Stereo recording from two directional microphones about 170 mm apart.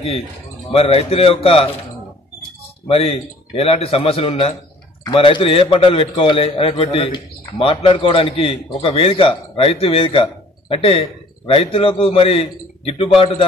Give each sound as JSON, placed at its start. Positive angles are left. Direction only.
{"t": 0.7, "sound": "a man's voice", "side_deg": 35}
{"t": 2.9, "sound": "a man's voice", "side_deg": 35}